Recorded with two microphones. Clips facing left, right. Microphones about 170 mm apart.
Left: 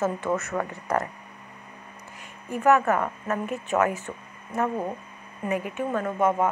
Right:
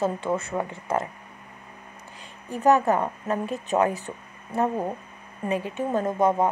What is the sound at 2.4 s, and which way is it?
A woman's voice, 35° right (ahead or behind).